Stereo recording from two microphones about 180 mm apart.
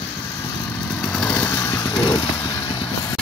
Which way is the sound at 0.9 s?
10° left (ahead or behind).